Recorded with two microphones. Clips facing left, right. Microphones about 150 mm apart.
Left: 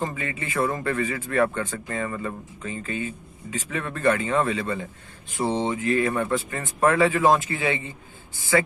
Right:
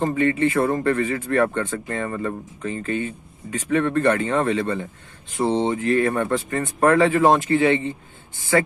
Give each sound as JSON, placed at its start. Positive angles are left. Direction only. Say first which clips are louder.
{"t": 0.0, "sound": "a man's voice", "louder": "right 11 dB", "side_deg": -40}
{"t": 5.4, "sound": "a man's voice", "louder": "right 4 dB", "side_deg": -25}